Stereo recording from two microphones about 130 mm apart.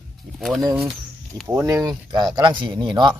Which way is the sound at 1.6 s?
30° right (ahead or behind).